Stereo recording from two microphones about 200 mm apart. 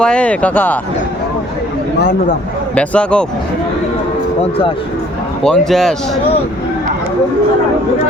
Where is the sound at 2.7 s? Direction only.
5° left (ahead or behind).